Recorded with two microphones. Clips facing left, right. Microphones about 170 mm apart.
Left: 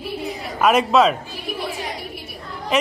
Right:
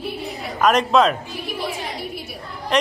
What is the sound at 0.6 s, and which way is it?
Speech, 5° left (ahead or behind).